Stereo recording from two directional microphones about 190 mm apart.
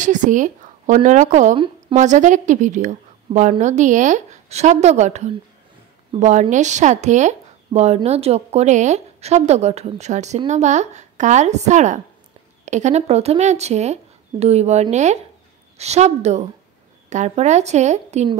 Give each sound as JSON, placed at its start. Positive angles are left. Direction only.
{"t": 0.0, "sound": "speech", "side_deg": -40}